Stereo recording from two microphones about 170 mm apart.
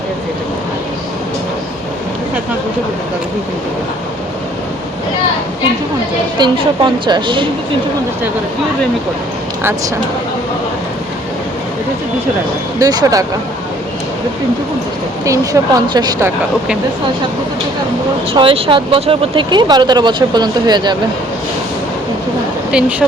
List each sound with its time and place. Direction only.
6.4 s speech: 30° right (ahead or behind)
12.8 s speech: 20° right (ahead or behind)
15.2 s speech: 20° right (ahead or behind)
18.3 s speech: 30° right (ahead or behind)
22.7 s speech: 10° right (ahead or behind)